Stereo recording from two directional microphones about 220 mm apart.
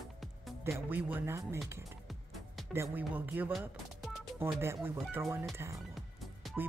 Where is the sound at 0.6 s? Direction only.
10° right (ahead or behind).